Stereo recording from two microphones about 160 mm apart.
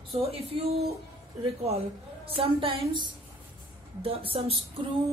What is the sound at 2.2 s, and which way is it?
A woman's voice, 35° right (ahead or behind).